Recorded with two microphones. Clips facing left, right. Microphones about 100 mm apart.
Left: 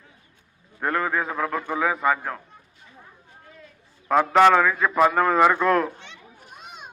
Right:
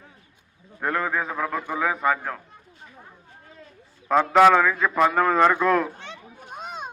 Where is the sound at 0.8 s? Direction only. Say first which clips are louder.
Left 1 dB; centre (ahead or behind).